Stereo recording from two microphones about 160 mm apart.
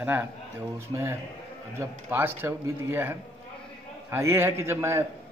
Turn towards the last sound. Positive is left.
turn(degrees=-15)  # may be behind; listen again after turning